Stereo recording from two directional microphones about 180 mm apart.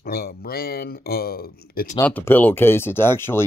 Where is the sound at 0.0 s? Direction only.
60° left (ahead or behind).